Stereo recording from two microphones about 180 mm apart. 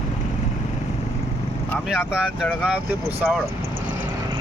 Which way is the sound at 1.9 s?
Centre (ahead or behind).